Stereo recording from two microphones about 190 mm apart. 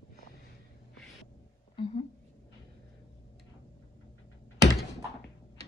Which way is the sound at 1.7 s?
25° left (ahead or behind).